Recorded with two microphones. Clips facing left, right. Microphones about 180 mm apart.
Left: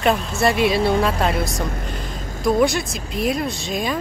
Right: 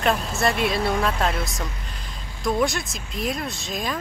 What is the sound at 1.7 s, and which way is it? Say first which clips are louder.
Vehicle: left 10 dB; 50° left (ahead or behind).